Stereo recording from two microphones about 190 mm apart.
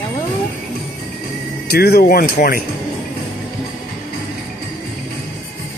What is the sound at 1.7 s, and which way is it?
Speech, 55° left (ahead or behind).